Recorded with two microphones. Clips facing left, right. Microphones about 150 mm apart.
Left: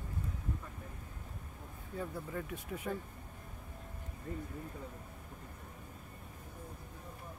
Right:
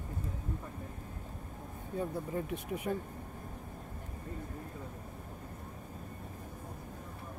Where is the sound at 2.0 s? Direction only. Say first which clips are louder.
Right 5 dB; 25° right (ahead or behind).